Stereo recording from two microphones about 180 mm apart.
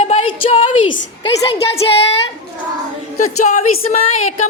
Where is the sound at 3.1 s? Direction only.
40° left (ahead or behind).